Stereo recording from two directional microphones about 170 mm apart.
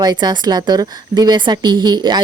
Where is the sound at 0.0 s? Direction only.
25° right (ahead or behind).